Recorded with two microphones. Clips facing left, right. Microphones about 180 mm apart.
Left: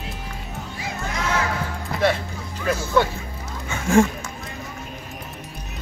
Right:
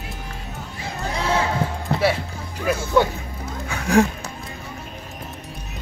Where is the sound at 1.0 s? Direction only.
30° right (ahead or behind).